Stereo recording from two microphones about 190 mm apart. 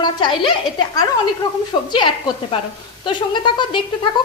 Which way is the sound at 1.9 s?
25° left (ahead or behind).